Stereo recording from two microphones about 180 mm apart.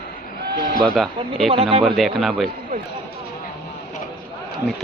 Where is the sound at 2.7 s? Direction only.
45° right (ahead or behind).